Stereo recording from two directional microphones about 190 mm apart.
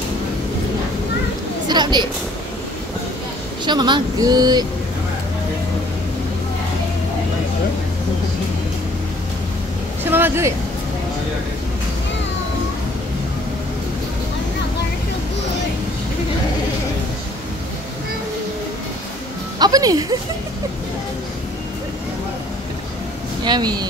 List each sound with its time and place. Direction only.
1.7 s a sound: 20° right (ahead or behind)
3.6 s speech: 25° right (ahead or behind)
10.1 s speech: 10° right (ahead or behind)
19.6 s speech: 20° right (ahead or behind)
23.4 s speech: 20° right (ahead or behind)